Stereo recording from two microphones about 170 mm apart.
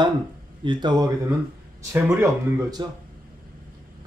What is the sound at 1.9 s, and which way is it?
Speech, 15° right (ahead or behind).